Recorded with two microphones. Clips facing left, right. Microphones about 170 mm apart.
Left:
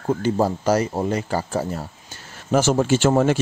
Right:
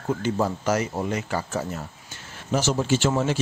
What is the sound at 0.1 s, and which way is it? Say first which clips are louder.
Speech: left 4 dB; 35° left (ahead or behind).